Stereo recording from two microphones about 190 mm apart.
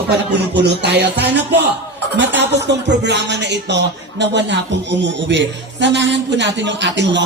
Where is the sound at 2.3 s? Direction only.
65° right (ahead or behind).